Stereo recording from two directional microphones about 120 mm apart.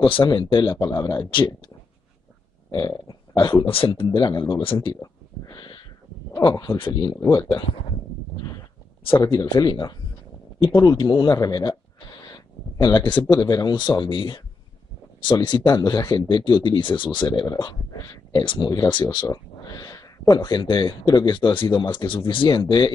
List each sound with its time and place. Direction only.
0.0 s speech: 40° left (ahead or behind)
0.7 s speech: 30° left (ahead or behind)
1.2 s speech: 45° left (ahead or behind)
3.1 s speech: 40° left (ahead or behind)
8.4 s a sound: 30° left (ahead or behind)
9.2 s speech: 30° left (ahead or behind)
12.8 s speech: 40° left (ahead or behind)
18.4 s speech: 45° left (ahead or behind)